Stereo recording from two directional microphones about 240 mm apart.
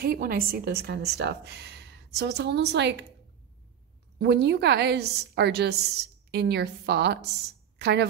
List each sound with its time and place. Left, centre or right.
0.0 s a woman's voice: right
4.2 s a woman's voice: right